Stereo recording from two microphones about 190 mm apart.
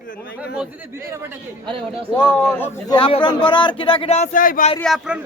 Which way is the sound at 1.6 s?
30° right (ahead or behind).